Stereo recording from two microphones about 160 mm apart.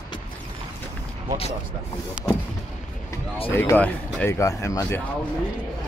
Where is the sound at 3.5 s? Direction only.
10° left (ahead or behind).